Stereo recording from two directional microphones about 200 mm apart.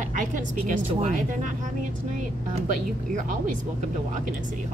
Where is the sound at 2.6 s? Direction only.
40° right (ahead or behind).